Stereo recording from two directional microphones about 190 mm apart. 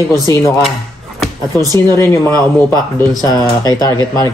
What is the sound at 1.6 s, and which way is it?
Speech, 20° right (ahead or behind).